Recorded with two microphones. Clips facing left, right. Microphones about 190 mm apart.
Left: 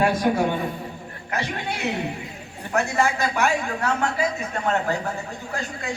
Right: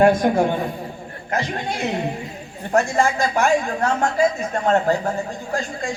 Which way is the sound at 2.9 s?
40° right (ahead or behind).